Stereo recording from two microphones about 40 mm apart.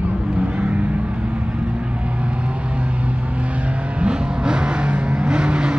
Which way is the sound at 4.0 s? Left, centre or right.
Right.